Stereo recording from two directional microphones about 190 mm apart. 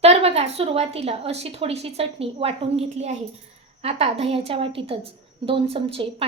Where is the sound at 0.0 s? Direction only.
35° right (ahead or behind).